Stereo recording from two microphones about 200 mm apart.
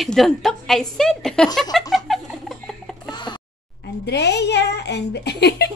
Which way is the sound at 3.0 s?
20° left (ahead or behind).